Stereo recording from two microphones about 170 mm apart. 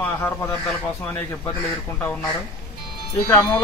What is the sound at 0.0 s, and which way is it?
Speech, 10° left (ahead or behind).